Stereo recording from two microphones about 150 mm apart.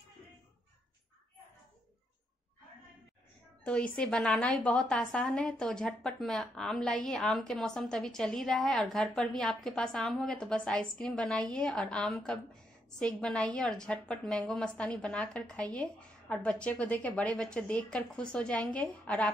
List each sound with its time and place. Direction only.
3.6 s a woman's voice: 10° left (ahead or behind)